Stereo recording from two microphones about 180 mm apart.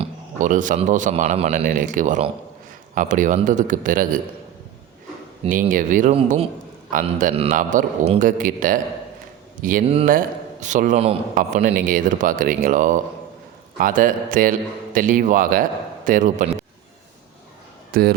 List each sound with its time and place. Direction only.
0.0 s a man's voice: 45° right (ahead or behind)
5.5 s a man's voice: 50° right (ahead or behind)
9.8 s speech: 30° right (ahead or behind)
10.1 s a man's voice: 45° right (ahead or behind)
11.3 s a man's voice: 50° right (ahead or behind)
17.9 s speech: 55° right (ahead or behind)